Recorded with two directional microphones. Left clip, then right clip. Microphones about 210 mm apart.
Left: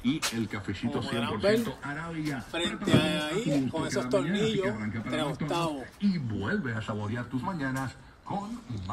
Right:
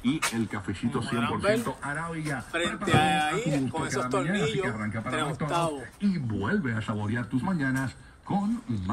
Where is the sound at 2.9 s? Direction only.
10° left (ahead or behind).